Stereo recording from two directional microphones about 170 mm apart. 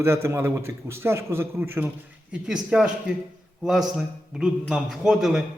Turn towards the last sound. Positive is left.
turn(degrees=0)  # may be behind; listen again after turning